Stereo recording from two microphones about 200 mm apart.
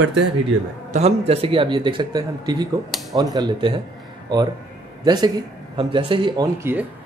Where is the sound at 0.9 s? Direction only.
30° right (ahead or behind).